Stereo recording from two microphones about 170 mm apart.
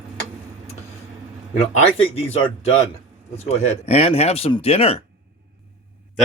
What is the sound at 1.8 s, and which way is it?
Speech, 35° left (ahead or behind).